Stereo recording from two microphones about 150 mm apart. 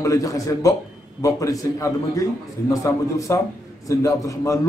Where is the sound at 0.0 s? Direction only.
20° left (ahead or behind).